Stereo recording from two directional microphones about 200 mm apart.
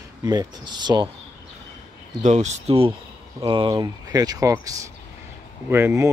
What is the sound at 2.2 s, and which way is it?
Speech, 35° right (ahead or behind).